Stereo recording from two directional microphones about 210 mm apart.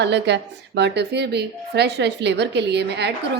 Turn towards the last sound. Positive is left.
turn(degrees=-55)  # may be behind; listen again after turning